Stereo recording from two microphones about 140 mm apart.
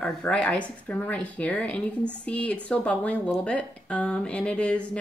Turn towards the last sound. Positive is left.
turn(degrees=10)  # may be behind; listen again after turning